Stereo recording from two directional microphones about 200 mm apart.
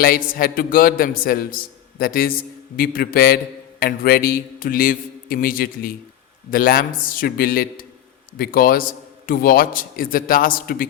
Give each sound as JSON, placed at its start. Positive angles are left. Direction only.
{"t": 0.3, "sound": "a man's voice", "side_deg": 45}